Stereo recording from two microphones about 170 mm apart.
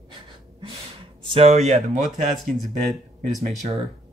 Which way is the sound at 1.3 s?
40° right (ahead or behind).